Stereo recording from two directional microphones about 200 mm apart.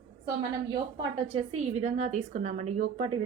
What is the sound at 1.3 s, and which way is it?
A woman's voice, 30° right (ahead or behind).